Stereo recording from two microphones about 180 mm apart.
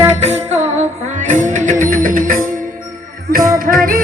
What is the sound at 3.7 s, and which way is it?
Music, 50° right (ahead or behind).